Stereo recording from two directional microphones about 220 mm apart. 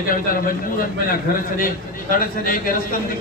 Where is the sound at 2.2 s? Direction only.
40° left (ahead or behind).